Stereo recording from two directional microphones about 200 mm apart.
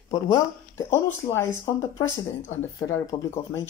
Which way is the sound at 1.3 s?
15° left (ahead or behind).